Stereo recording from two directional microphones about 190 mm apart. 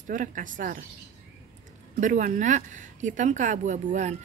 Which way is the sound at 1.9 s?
40° right (ahead or behind).